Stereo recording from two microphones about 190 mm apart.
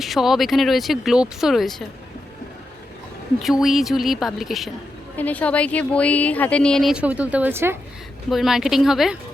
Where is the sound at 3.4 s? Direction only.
Centre (ahead or behind).